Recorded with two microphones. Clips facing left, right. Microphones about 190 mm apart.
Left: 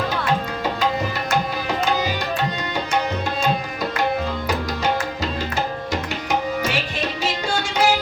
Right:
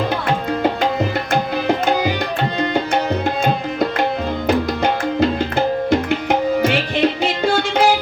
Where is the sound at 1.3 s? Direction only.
55° right (ahead or behind).